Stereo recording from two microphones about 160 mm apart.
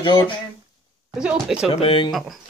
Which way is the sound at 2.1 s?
Centre (ahead or behind).